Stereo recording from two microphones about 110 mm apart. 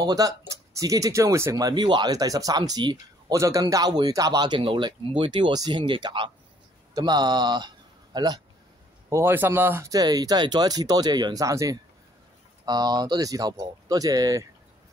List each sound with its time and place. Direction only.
0.0 s speech: 35° right (ahead or behind)
9.1 s speech: 20° right (ahead or behind)
9.8 s speech: 35° right (ahead or behind)